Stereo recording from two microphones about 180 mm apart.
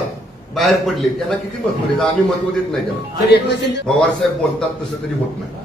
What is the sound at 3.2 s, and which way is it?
Speech, 70° left (ahead or behind).